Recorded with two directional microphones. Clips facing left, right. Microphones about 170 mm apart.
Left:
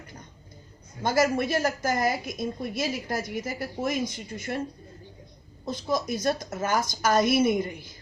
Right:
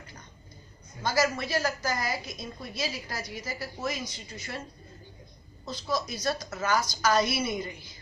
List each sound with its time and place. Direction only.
1.0 s a woman's voice: 50° left (ahead or behind)
5.9 s a woman's voice: 50° left (ahead or behind)